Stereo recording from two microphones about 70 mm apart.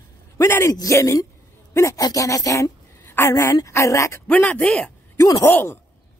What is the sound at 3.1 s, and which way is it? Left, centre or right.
Speech, left.